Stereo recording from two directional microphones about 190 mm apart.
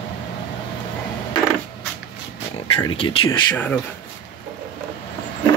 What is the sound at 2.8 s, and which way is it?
Speech, 25° left (ahead or behind).